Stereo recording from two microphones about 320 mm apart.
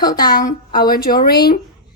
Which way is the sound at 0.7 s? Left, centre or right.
Left.